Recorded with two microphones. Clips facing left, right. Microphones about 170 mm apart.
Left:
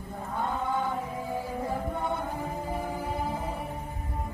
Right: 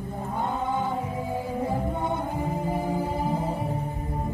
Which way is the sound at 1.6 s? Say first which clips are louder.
Right 5 dB; 20° right (ahead or behind).